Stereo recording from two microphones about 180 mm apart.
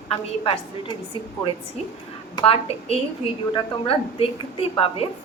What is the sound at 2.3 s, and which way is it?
A woman's voice, 35° left (ahead or behind).